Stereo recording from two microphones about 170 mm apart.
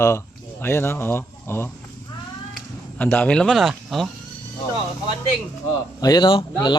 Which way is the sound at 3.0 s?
10° left (ahead or behind).